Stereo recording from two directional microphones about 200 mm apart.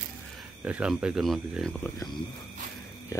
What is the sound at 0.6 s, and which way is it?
Speech, 5° right (ahead or behind).